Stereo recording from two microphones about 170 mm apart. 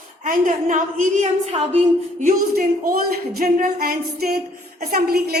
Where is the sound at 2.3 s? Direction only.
55° right (ahead or behind).